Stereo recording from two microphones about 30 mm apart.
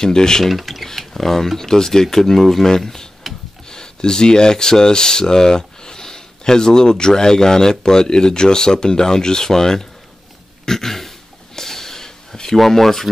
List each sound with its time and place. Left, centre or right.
0.0 s speech: left
0.5 s speech: centre
0.8 s speech: centre
10.6 s a sound: centre
12.5 s speech: centre